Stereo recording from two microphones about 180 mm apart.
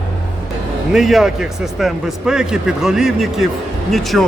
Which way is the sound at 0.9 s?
Centre (ahead or behind).